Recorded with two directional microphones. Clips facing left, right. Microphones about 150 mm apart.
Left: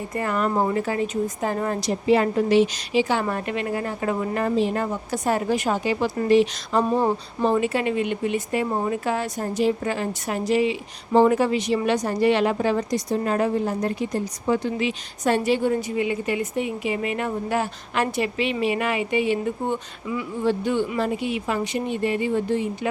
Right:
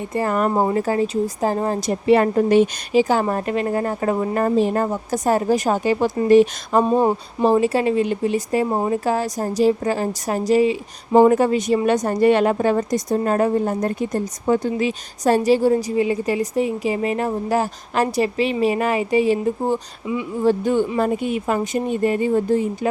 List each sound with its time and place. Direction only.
0.1 s a woman's voice: 35° right (ahead or behind)
1.9 s a woman's voice: 55° right (ahead or behind)
6.8 s a sound: 20° right (ahead or behind)
7.4 s a woman's voice: 35° right (ahead or behind)